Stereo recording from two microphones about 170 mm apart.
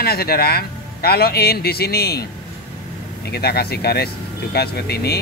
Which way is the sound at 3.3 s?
65° left (ahead or behind).